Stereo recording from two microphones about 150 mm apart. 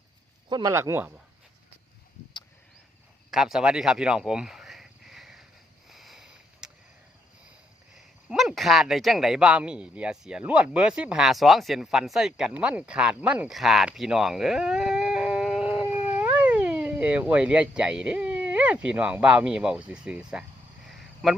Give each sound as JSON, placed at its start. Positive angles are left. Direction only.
{"t": 0.4, "sound": "speech", "side_deg": -30}
{"t": 0.7, "sound": "speech", "side_deg": -20}
{"t": 3.3, "sound": "a sound", "side_deg": -5}
{"t": 5.9, "sound": "sniff", "side_deg": 0}
{"t": 7.9, "sound": "speech", "side_deg": -5}
{"t": 20.8, "sound": "a sound", "side_deg": 0}